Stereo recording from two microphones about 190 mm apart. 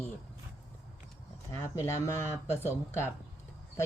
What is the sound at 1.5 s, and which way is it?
Speech, 15° left (ahead or behind).